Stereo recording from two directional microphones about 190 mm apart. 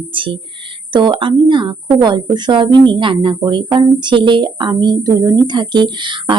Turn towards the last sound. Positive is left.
turn(degrees=-25)  # may be behind; listen again after turning